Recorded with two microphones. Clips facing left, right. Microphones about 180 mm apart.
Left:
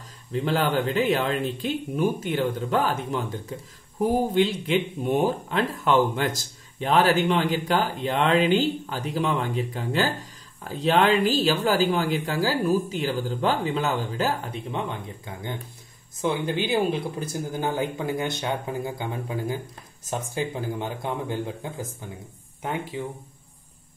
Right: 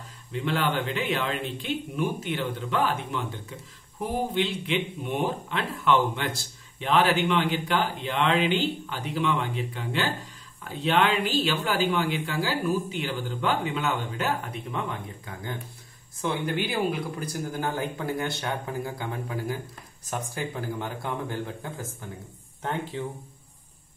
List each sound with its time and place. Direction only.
0.3 s speech: 40° left (ahead or behind); by 23.0 s 10° left (ahead or behind)